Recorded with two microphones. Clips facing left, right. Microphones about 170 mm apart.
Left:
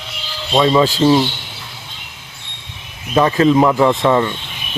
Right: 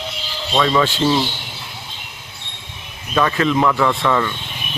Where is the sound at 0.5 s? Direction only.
25° left (ahead or behind).